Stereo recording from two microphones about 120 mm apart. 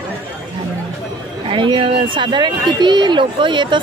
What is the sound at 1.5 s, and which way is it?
Speech, 45° right (ahead or behind).